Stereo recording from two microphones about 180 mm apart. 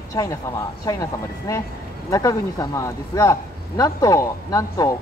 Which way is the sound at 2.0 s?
20° left (ahead or behind).